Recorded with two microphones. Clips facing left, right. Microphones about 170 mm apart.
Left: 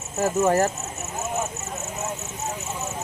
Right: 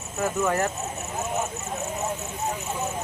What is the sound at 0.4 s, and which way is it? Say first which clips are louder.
Speech: left 5 dB; 40° left (ahead or behind).